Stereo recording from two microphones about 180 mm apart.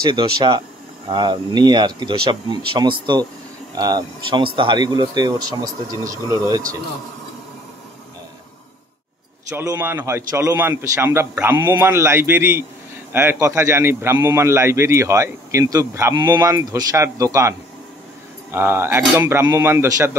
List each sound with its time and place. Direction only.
0.1 s speech: 25° right (ahead or behind)
9.5 s a man's voice: 15° right (ahead or behind)